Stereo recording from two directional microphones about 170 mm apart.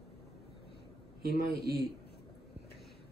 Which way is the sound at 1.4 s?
70° right (ahead or behind).